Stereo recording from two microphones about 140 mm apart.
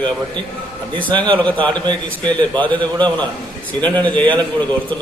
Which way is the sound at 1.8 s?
30° right (ahead or behind).